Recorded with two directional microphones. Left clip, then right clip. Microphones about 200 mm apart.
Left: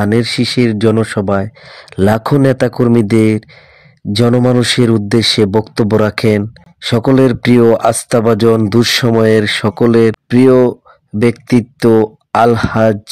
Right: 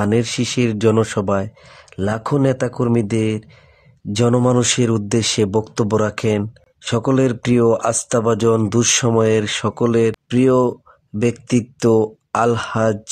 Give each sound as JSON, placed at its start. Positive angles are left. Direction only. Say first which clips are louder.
{"t": 0.0, "sound": "speech", "louder": "left 5 dB", "side_deg": 15}
{"t": 1.7, "sound": "speech", "louder": "left 14 dB", "side_deg": 25}